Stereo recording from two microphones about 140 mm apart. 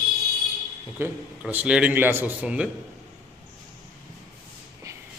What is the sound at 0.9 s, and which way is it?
A man's voice, 15° right (ahead or behind).